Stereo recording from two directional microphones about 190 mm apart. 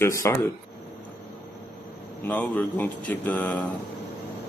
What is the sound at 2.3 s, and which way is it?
A man's voice, 10° left (ahead or behind).